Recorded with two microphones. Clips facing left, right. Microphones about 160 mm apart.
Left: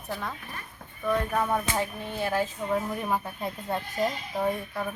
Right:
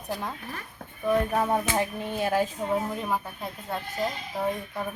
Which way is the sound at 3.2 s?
5° left (ahead or behind).